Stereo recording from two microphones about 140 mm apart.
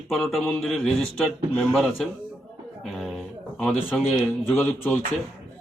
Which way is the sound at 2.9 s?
Centre (ahead or behind).